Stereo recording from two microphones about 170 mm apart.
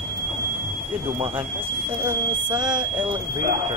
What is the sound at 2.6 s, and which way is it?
Speech, 5° right (ahead or behind).